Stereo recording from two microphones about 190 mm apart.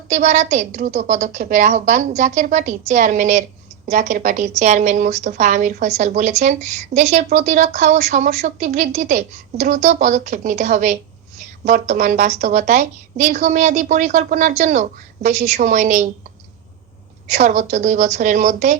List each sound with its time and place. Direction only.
0.1 s a woman's voice: 35° right (ahead or behind)
17.2 s a woman's voice: 40° right (ahead or behind)